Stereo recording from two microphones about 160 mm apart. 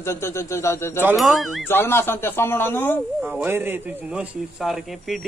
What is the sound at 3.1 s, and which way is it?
A man's voice, 10° right (ahead or behind).